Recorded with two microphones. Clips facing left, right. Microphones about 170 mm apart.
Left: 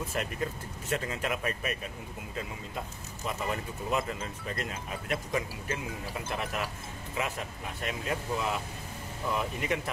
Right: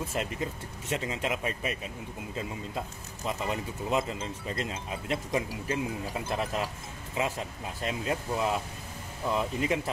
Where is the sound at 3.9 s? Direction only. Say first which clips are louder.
Right 2 dB; 25° right (ahead or behind).